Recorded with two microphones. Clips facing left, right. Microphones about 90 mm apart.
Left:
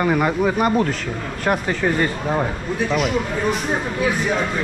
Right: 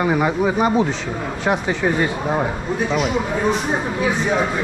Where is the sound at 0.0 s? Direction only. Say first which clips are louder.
Even; 10° right (ahead or behind).